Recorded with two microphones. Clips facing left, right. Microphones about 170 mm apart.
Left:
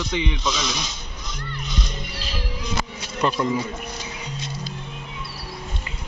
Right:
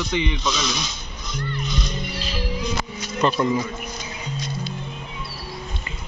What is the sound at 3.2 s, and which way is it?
Speech, 10° left (ahead or behind).